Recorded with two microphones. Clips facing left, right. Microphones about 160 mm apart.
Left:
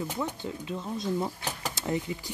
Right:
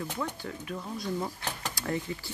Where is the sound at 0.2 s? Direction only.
20° left (ahead or behind).